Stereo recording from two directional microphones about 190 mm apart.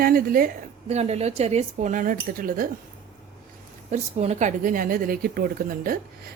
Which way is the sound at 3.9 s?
35° right (ahead or behind).